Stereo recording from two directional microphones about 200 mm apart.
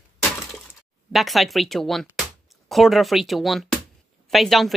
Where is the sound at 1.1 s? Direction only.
Centre (ahead or behind).